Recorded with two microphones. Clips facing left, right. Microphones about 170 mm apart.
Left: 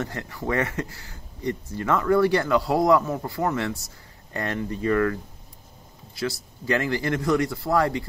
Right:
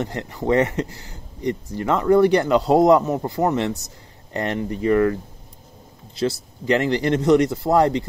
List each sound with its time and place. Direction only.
0.0 s speech: 20° right (ahead or behind)